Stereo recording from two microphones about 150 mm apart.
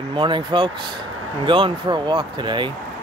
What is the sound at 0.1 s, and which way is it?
Speech, 35° right (ahead or behind).